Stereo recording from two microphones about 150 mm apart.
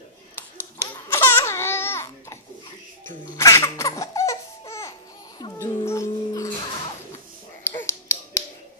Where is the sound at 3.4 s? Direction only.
20° left (ahead or behind).